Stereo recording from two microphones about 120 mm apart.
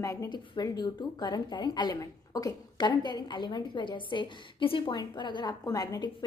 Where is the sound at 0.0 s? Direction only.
25° left (ahead or behind).